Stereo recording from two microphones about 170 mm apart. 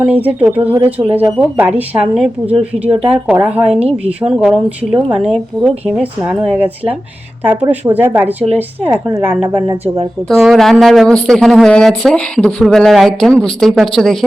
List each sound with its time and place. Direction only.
0.0 s speech: 10° right (ahead or behind)
9.6 s speech: 25° right (ahead or behind)
10.4 s speech: centre (ahead or behind)